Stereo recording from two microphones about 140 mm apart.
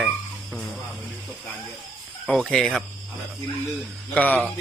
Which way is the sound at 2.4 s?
5° left (ahead or behind).